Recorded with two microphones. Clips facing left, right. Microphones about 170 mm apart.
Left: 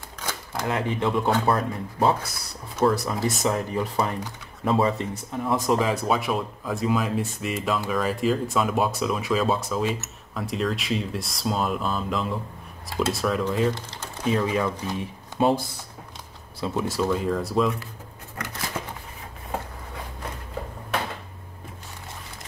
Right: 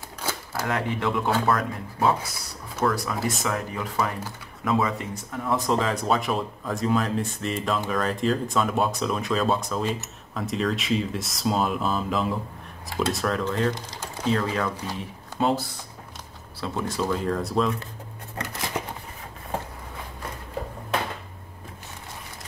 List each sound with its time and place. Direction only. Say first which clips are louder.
0.2 s camera: right 1 dB; 10° right (ahead or behind)
0.7 s speech: left 1 dB; 20° left (ahead or behind)
5.7 s speech: left 1 dB; 10° left (ahead or behind)
16.7 s speech: left 2 dB; 5° left (ahead or behind)
18.8 s shuffling cards: right 3 dB; 15° right (ahead or behind)